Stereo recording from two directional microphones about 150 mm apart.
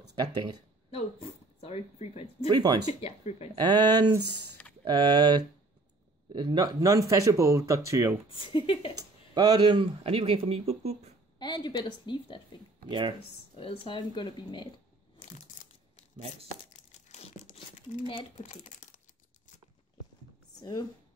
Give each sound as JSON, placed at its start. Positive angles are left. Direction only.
{"t": 0.0, "sound": "speech", "side_deg": -25}
{"t": 0.9, "sound": "speech", "side_deg": 40}
{"t": 2.4, "sound": "speech", "side_deg": -25}
{"t": 2.9, "sound": "speech", "side_deg": 40}
{"t": 3.6, "sound": "speech", "side_deg": -25}
{"t": 8.3, "sound": "speech", "side_deg": 35}
{"t": 8.9, "sound": "speech", "side_deg": -25}
{"t": 11.3, "sound": "a woman's voice", "side_deg": 30}
{"t": 12.8, "sound": "speech", "side_deg": -30}
{"t": 13.6, "sound": "speech", "side_deg": 35}
{"t": 15.1, "sound": "crushing", "side_deg": 60}
{"t": 16.9, "sound": "tearing", "side_deg": 50}
{"t": 18.3, "sound": "speech", "side_deg": 55}